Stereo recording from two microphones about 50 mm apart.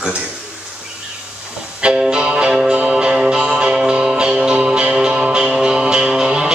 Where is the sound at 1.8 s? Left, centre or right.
Centre.